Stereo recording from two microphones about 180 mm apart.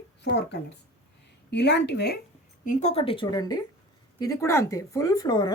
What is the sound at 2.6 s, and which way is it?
A woman's voice, 40° left (ahead or behind).